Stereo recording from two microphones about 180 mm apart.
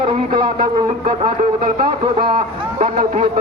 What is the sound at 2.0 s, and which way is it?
Speech, 30° right (ahead or behind).